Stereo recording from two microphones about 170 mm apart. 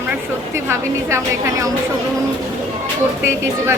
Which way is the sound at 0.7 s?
15° right (ahead or behind).